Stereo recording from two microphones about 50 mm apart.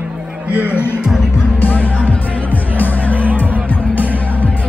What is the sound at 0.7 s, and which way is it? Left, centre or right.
Music, left.